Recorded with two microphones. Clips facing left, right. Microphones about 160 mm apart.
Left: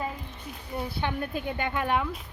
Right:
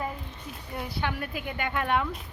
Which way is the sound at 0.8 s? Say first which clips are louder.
Left 1 dB; 25° left (ahead or behind).